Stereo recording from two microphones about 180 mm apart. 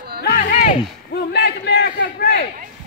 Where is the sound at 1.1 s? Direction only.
70° left (ahead or behind).